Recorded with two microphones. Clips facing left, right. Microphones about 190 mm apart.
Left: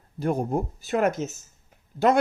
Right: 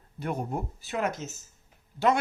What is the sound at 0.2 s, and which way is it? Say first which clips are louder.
Speech: left 7 dB; 35° left (ahead or behind).